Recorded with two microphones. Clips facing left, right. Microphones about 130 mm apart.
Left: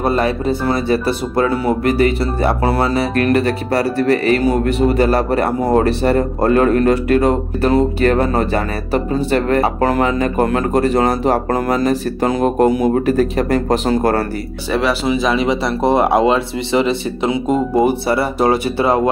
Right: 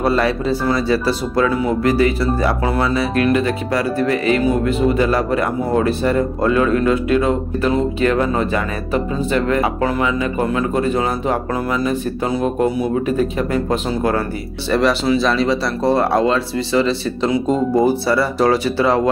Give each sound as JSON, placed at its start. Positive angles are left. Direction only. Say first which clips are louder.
{"t": 2.0, "sound": "speech", "louder": "left 1 dB", "side_deg": 55}
{"t": 2.4, "sound": "speech", "louder": "left 5 dB", "side_deg": 30}
{"t": 3.3, "sound": "speech", "louder": "left 2 dB", "side_deg": 50}
{"t": 13.4, "sound": "speech", "louder": "left 3 dB", "side_deg": 45}
{"t": 14.7, "sound": "speech", "louder": "right 1 dB", "side_deg": 5}
{"t": 15.0, "sound": "speech", "louder": "even", "side_deg": 15}